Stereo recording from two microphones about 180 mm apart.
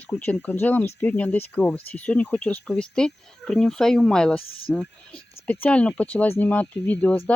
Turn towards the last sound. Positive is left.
turn(degrees=10)  # may be behind; listen again after turning